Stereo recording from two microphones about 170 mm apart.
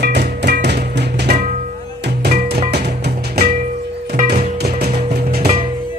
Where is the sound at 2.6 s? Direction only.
75° right (ahead or behind).